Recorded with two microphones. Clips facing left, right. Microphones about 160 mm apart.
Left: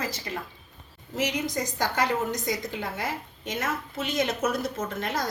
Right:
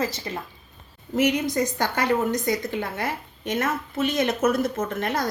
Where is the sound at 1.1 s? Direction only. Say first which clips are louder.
Right 7 dB; 55° right (ahead or behind).